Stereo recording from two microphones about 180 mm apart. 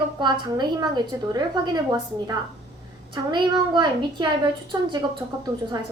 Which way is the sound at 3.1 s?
25° right (ahead or behind).